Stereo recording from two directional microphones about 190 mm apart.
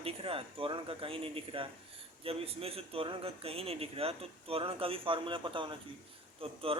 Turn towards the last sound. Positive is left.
turn(degrees=-30)  # may be behind; listen again after turning